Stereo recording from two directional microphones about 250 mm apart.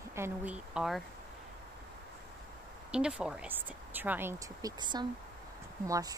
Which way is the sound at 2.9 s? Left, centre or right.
Centre.